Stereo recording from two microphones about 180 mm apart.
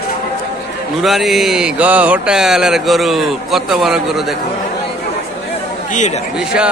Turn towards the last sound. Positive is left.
turn(degrees=-5)  # may be behind; listen again after turning